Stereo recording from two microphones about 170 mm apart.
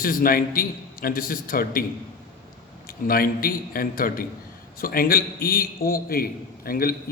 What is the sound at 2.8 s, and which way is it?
A man's voice, 60° left (ahead or behind).